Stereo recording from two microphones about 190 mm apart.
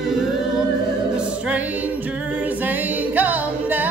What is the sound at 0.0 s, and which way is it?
Music, centre (ahead or behind).